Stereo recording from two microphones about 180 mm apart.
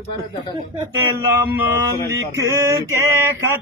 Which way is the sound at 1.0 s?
10° right (ahead or behind).